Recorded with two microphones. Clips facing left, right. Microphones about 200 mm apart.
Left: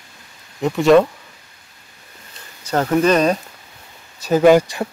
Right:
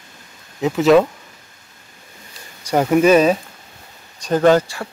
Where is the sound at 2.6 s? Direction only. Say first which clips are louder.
Right 2 dB; 10° right (ahead or behind).